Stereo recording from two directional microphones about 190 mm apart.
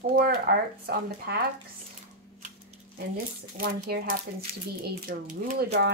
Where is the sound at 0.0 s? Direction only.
50° right (ahead or behind).